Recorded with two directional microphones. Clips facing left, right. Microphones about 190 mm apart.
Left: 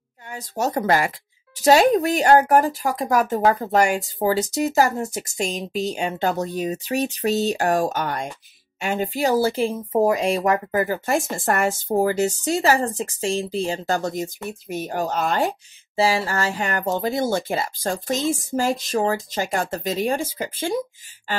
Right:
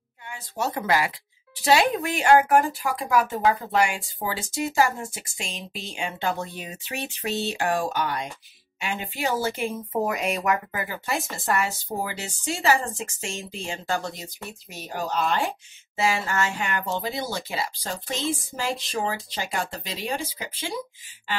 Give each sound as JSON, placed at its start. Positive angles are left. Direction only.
{"t": 0.3, "sound": "speech", "side_deg": 40}
{"t": 16.0, "sound": "speech", "side_deg": 35}